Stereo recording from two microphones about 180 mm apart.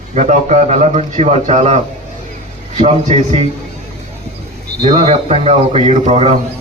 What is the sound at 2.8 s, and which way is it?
Speech, 35° right (ahead or behind).